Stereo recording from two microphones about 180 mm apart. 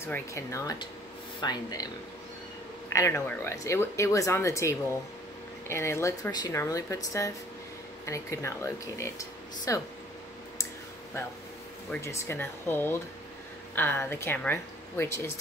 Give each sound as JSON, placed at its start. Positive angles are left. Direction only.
{"t": 0.0, "sound": "speech", "side_deg": 15}
{"t": 2.9, "sound": "speech", "side_deg": 15}
{"t": 11.9, "sound": "speech", "side_deg": 15}